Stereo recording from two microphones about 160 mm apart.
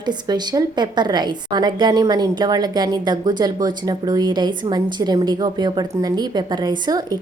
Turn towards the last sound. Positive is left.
turn(degrees=-25)  # may be behind; listen again after turning